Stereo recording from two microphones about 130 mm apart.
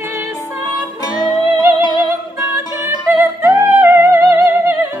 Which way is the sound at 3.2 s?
20° right (ahead or behind).